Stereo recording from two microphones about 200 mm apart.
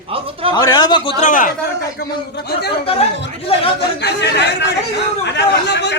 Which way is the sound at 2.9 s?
30° left (ahead or behind).